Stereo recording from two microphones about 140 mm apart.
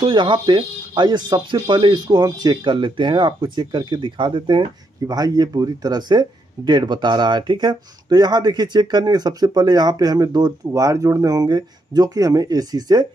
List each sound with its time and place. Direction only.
0.0 s speech: 35° right (ahead or behind)